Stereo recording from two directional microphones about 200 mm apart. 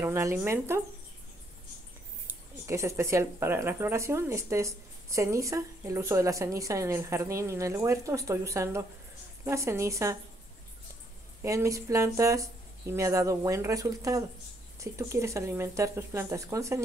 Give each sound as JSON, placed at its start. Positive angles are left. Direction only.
{"t": 0.0, "sound": "speech", "side_deg": -10}
{"t": 2.2, "sound": "speech", "side_deg": -15}
{"t": 11.4, "sound": "speech", "side_deg": -15}